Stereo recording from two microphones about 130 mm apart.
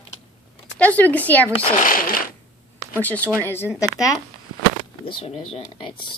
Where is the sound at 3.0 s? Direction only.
10° left (ahead or behind); by 4.1 s 25° left (ahead or behind).